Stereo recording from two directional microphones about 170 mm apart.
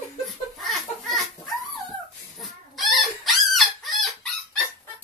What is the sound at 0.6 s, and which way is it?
Belly laugh, centre (ahead or behind).